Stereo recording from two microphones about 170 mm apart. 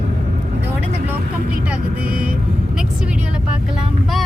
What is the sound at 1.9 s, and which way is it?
Speech, 60° right (ahead or behind).